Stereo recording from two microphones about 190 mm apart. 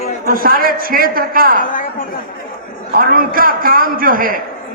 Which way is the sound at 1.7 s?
50° left (ahead or behind).